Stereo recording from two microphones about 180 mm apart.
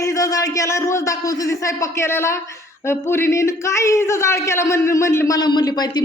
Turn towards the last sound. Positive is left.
turn(degrees=25)  # may be behind; listen again after turning